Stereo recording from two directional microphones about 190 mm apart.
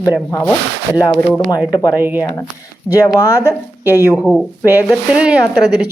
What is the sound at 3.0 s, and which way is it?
Speech, 15° left (ahead or behind).